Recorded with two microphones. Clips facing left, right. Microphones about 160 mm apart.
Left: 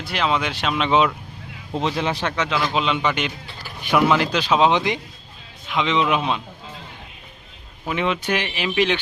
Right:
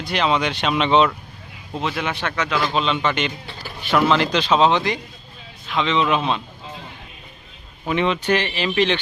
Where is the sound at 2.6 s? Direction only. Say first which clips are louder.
Right 1 dB; 10° left (ahead or behind).